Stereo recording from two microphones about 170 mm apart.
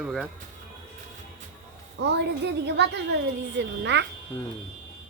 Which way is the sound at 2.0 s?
85° right.